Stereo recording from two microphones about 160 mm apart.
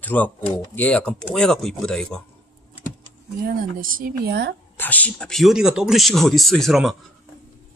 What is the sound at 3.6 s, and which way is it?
Speech, 60° right (ahead or behind).